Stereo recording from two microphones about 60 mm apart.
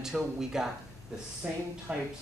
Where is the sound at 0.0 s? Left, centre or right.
Centre.